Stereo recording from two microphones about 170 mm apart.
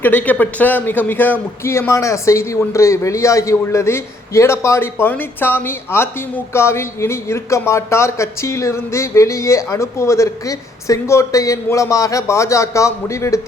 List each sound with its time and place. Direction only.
0.0 s a man's voice: 10° left (ahead or behind)